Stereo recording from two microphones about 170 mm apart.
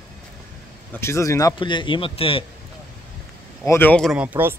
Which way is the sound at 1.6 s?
30° left (ahead or behind).